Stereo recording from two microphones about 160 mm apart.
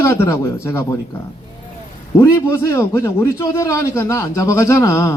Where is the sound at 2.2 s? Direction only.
15° left (ahead or behind).